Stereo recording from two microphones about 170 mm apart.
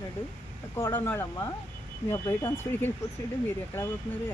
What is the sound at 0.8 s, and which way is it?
Speech, 15° left (ahead or behind).